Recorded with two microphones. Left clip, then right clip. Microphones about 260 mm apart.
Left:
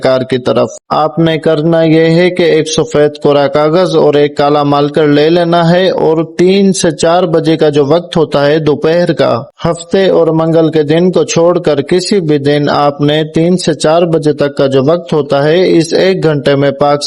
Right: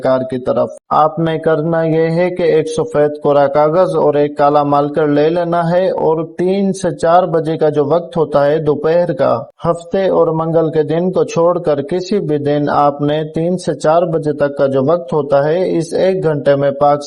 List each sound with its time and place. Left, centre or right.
0.0 s a man's voice: left